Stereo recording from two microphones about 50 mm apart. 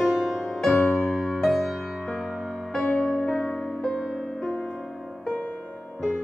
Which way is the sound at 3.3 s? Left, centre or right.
Centre.